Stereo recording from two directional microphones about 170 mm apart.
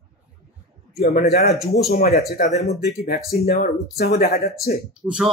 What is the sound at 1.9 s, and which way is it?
Speech, 65° left (ahead or behind).